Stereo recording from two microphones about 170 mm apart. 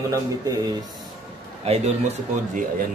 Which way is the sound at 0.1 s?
20° right (ahead or behind).